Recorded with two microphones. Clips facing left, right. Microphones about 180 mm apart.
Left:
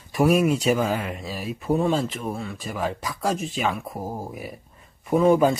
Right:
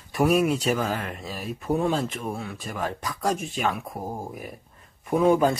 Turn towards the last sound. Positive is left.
turn(degrees=5)  # may be behind; listen again after turning